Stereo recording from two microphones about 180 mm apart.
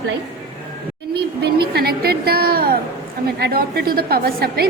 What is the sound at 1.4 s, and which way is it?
A woman's voice, 60° right (ahead or behind).